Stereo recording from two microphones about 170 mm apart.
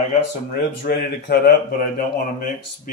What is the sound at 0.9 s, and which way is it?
Speech, 65° left (ahead or behind).